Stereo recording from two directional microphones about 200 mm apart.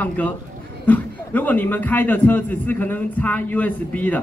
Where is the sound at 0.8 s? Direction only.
10° left (ahead or behind).